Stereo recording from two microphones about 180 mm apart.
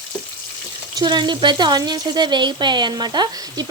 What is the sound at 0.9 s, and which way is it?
Speech, 25° right (ahead or behind).